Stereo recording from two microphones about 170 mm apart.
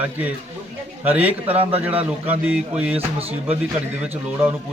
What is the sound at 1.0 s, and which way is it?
A man's voice, 10° right (ahead or behind).